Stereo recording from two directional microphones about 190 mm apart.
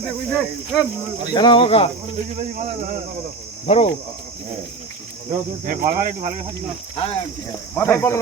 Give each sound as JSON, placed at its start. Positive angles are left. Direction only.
{"t": 0.3, "sound": "speech", "side_deg": 0}
{"t": 1.3, "sound": "speech", "side_deg": 25}
{"t": 3.7, "sound": "cricket", "side_deg": 35}
{"t": 5.6, "sound": "speech", "side_deg": -45}
{"t": 6.9, "sound": "cricket", "side_deg": 30}
{"t": 7.8, "sound": "speech", "side_deg": 15}